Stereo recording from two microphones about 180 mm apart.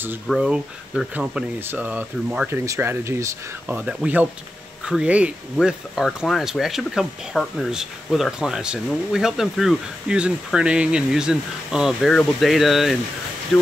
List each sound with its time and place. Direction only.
0.3 s speech: 5° right (ahead or behind)